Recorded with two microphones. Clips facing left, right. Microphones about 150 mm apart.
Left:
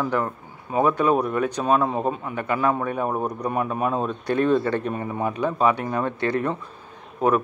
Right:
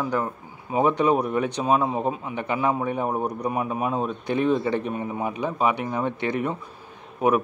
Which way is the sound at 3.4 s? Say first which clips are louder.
Left 3 dB; 10° right (ahead or behind).